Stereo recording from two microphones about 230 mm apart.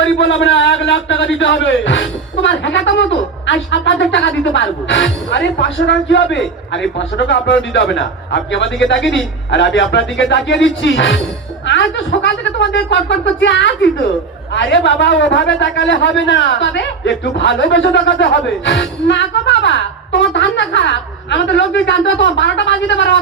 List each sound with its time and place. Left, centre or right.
0.0 s a man's voice: left